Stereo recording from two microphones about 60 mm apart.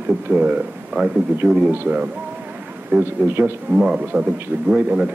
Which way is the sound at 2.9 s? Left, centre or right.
Right.